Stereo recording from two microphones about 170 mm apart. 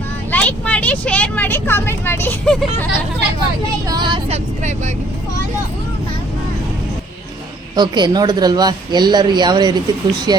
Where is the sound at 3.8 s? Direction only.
25° right (ahead or behind).